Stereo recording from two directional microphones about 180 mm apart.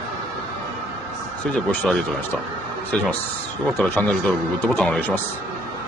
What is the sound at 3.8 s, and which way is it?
Speech, 5° left (ahead or behind).